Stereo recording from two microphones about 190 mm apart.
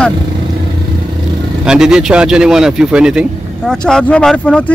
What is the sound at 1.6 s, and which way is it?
Speech, 5° right (ahead or behind).